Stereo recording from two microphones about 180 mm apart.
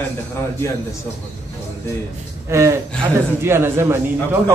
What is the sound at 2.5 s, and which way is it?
A man's voice, 15° right (ahead or behind).